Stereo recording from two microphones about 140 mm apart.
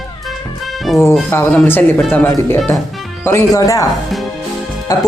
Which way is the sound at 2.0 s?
5° left (ahead or behind).